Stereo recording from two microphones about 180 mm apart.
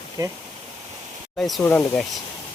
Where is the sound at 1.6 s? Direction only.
10° left (ahead or behind).